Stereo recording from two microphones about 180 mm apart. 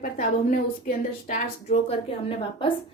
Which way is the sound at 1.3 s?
35° left (ahead or behind).